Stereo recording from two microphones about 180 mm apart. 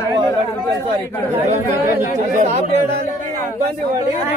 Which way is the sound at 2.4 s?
40° right (ahead or behind).